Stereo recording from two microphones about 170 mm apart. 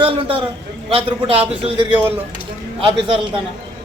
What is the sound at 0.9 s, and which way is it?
A man's voice, 35° right (ahead or behind).